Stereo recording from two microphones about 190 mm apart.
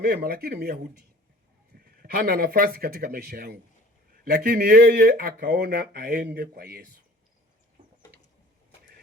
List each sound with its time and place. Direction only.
0.0 s speech: 50° right (ahead or behind)